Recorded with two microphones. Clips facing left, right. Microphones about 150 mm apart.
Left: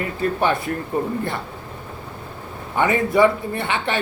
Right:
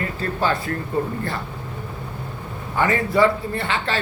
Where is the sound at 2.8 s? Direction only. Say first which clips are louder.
Left 2 dB; 20° left (ahead or behind).